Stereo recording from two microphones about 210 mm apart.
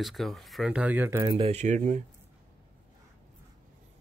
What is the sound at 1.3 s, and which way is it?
Speech, 30° right (ahead or behind).